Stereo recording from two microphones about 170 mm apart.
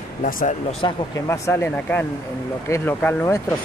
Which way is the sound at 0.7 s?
35° left (ahead or behind).